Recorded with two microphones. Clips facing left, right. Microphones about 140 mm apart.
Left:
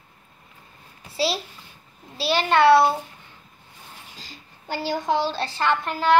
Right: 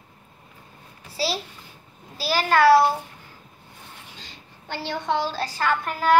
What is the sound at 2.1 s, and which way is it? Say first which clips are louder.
Child singing: left 1 dB; 25° left (ahead or behind).